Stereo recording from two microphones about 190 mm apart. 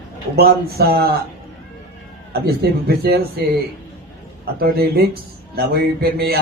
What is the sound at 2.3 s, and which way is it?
Speech, 55° right (ahead or behind).